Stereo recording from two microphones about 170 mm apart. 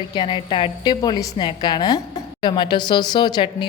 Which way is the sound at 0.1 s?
25° left (ahead or behind).